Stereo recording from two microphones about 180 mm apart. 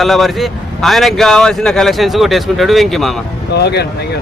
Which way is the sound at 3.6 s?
65° left (ahead or behind).